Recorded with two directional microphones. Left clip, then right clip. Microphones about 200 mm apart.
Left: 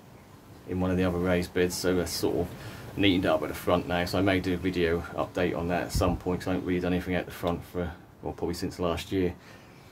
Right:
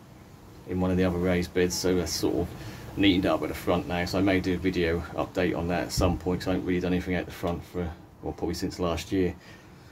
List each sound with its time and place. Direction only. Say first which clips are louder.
0.7 s speech: right 1 dB; 5° left (ahead or behind)